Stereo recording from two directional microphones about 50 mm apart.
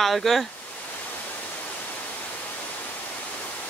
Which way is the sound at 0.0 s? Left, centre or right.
Centre.